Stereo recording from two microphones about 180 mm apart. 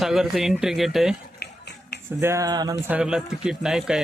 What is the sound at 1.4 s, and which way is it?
Finger snapping, 65° left (ahead or behind).